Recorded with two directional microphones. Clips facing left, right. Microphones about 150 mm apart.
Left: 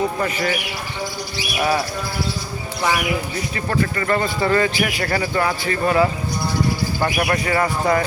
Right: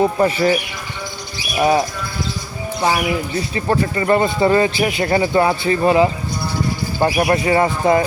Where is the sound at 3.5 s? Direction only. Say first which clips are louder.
Right 3 dB; 25° right (ahead or behind).